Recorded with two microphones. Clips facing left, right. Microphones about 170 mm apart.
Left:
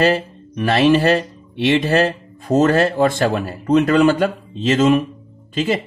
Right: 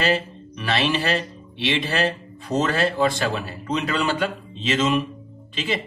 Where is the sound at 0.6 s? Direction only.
50° left (ahead or behind).